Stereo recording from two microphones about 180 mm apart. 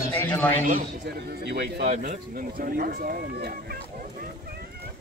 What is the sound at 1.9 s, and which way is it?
Speech, 45° right (ahead or behind).